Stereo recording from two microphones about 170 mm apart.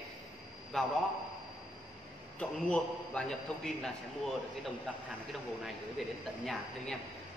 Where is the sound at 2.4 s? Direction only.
5° left (ahead or behind).